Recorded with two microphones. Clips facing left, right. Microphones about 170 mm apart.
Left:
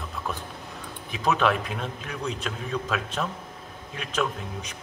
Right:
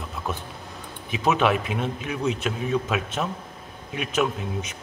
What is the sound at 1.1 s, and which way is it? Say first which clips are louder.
A man's voice: right 2 dB; 5° right (ahead or behind).